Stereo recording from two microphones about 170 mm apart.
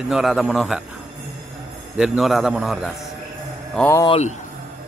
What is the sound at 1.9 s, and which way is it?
Speech, 5° right (ahead or behind).